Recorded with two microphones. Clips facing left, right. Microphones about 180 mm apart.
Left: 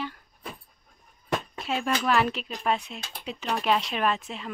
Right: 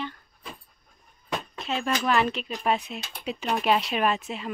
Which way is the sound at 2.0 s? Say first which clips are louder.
Even; centre (ahead or behind).